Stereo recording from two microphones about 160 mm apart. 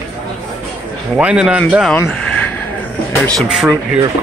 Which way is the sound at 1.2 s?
5° right (ahead or behind).